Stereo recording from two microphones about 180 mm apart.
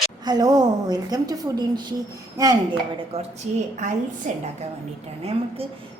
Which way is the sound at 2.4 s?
20° right (ahead or behind).